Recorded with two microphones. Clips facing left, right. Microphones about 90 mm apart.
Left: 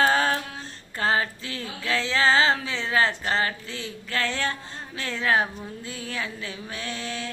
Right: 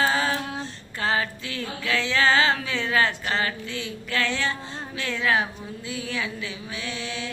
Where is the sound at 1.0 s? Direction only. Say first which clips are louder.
Left 1 dB; 35° left (ahead or behind).